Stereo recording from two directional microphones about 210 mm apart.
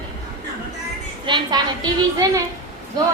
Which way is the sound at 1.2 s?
20° right (ahead or behind).